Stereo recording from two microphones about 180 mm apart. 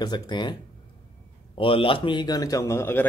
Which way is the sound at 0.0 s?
25° left (ahead or behind).